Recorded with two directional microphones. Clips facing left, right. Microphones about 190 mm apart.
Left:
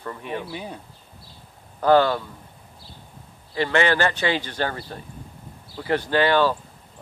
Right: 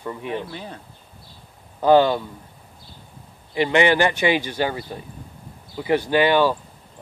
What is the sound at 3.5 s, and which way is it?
Speech, 15° right (ahead or behind).